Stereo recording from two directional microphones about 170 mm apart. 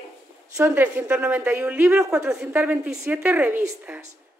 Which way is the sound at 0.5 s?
15° right (ahead or behind).